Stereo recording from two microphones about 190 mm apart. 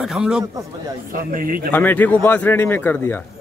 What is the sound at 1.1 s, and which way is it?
Speech, 45° right (ahead or behind).